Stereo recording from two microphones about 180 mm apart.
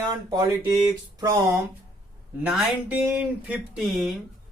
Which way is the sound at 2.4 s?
10° right (ahead or behind).